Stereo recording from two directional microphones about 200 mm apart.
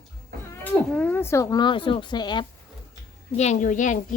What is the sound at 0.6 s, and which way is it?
Speech, 10° left (ahead or behind).